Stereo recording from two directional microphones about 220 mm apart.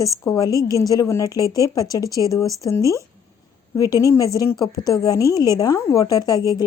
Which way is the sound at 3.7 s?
15° left (ahead or behind).